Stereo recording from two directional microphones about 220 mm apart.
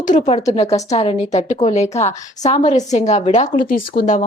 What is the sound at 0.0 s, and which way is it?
A woman's voice, 35° left (ahead or behind).